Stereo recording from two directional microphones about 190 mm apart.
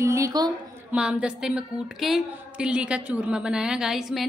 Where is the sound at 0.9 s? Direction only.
5° right (ahead or behind).